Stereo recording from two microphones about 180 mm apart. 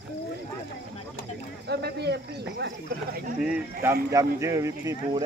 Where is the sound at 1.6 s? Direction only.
65° right (ahead or behind).